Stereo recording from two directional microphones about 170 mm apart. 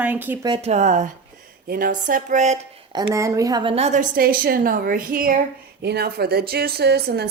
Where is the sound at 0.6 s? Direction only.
40° right (ahead or behind).